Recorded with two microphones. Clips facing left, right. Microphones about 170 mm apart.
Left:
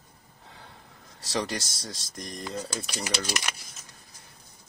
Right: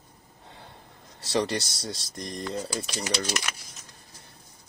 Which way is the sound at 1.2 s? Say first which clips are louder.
Right 4 dB; centre (ahead or behind).